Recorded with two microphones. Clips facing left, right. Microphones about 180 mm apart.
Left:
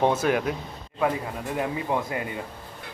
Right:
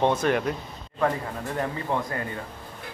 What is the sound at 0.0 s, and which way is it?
Speech, 5° left (ahead or behind).